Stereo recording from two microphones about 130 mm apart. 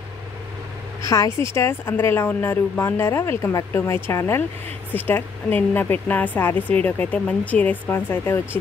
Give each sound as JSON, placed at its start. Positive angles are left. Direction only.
{"t": 1.0, "sound": "a woman's voice", "side_deg": 25}